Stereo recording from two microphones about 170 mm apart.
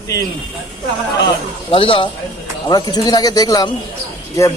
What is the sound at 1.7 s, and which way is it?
A man's voice, 30° left (ahead or behind).